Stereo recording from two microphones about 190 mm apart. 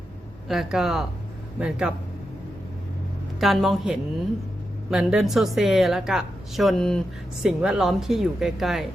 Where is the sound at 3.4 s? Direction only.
Centre (ahead or behind).